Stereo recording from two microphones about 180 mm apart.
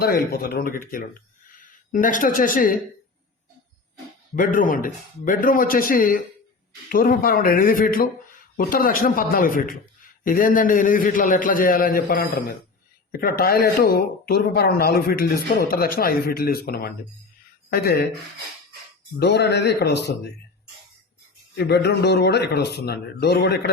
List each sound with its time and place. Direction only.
0.0 s a man's voice: 60° left (ahead or behind)
4.4 s a man's voice: 50° left (ahead or behind)
19.2 s a man's voice: 70° left (ahead or behind)
21.6 s a man's voice: 65° left (ahead or behind)